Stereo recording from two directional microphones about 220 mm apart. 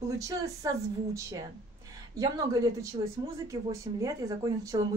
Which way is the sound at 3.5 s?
15° right (ahead or behind).